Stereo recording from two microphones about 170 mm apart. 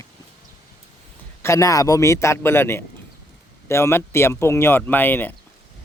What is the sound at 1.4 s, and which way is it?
Speech, 20° left (ahead or behind).